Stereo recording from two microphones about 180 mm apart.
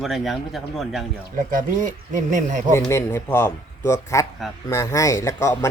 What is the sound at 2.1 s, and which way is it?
Speech, 45° right (ahead or behind).